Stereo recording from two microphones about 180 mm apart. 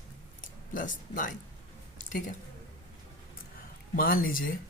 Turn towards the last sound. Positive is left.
turn(degrees=50)  # may be behind; listen again after turning